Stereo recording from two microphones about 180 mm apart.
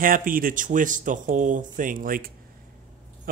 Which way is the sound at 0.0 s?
50° right (ahead or behind).